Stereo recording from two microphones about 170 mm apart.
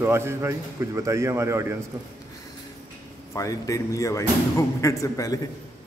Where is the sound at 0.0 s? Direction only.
15° right (ahead or behind).